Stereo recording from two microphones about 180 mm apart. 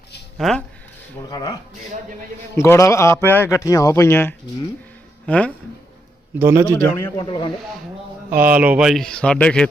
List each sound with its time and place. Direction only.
0.3 s speech: centre (ahead or behind)
1.3 s speech: 20° left (ahead or behind)
2.6 s a man's voice: 15° left (ahead or behind)
6.4 s a man's voice: 15° right (ahead or behind)
7.2 s speech: 25° left (ahead or behind)
8.3 s speech: 10° right (ahead or behind)